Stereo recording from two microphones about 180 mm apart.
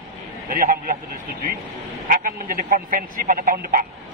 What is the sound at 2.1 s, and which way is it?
Speech, 50° right (ahead or behind).